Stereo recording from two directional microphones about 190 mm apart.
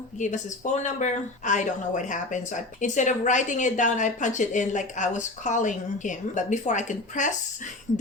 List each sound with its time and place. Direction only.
0.2 s speech: 40° left (ahead or behind)